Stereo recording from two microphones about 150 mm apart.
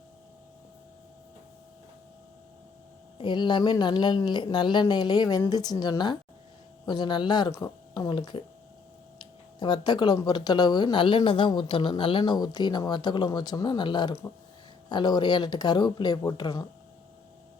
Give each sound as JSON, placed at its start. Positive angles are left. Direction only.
{"t": 3.2, "sound": "speech", "side_deg": 30}